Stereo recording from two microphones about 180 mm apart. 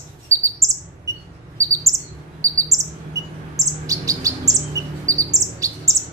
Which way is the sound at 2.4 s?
15° right (ahead or behind).